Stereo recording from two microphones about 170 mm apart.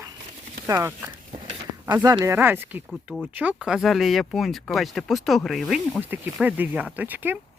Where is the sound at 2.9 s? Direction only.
Centre (ahead or behind).